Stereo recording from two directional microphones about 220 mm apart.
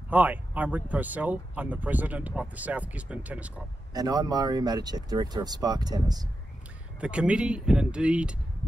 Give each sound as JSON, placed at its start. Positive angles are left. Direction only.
{"t": 0.1, "sound": "speech", "side_deg": -5}
{"t": 3.9, "sound": "speech", "side_deg": -15}
{"t": 7.0, "sound": "speech", "side_deg": -5}